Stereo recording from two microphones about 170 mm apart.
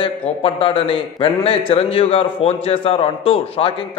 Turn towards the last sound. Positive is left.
turn(degrees=35)  # may be behind; listen again after turning